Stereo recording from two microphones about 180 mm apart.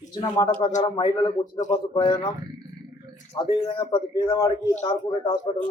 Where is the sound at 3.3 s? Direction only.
30° left (ahead or behind).